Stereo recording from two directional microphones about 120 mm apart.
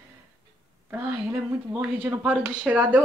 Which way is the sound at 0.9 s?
15° right (ahead or behind).